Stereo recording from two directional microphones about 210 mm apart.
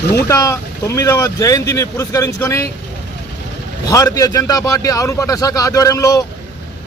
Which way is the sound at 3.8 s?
15° left (ahead or behind).